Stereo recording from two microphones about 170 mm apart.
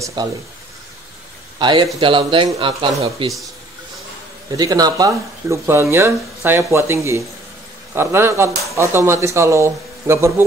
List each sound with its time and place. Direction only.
0.0 s speech: 25° right (ahead or behind)
1.6 s speech: 25° right (ahead or behind)
4.5 s speech: 20° right (ahead or behind)